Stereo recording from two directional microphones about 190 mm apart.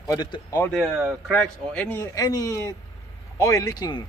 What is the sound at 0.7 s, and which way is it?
Speech, centre (ahead or behind).